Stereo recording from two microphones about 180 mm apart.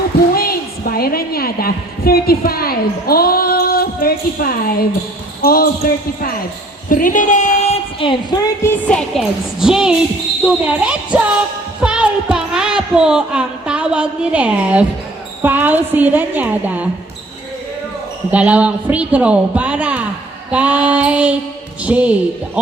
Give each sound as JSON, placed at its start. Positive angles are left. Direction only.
{"t": 0.3, "sound": "a sound", "side_deg": 55}
{"t": 5.4, "sound": "speech", "side_deg": 55}
{"t": 7.9, "sound": "a woman's voice", "side_deg": 30}
{"t": 8.6, "sound": "music", "side_deg": 10}
{"t": 10.4, "sound": "a woman's voice", "side_deg": -5}
{"t": 11.8, "sound": "a sound", "side_deg": -5}
{"t": 15.4, "sound": "a woman's voice", "side_deg": -10}
{"t": 18.3, "sound": "a woman's voice", "side_deg": -5}